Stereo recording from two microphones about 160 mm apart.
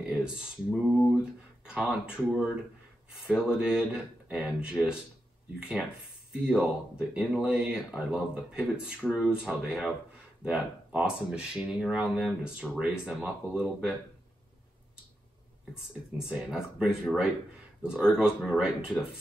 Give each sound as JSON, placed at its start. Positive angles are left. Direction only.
{"t": 0.0, "sound": "speech", "side_deg": -5}
{"t": 0.9, "sound": "a sound", "side_deg": 5}
{"t": 1.6, "sound": "speech", "side_deg": -5}
{"t": 15.7, "sound": "speech", "side_deg": -5}